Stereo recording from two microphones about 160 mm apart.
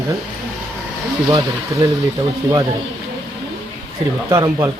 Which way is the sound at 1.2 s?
25° right (ahead or behind).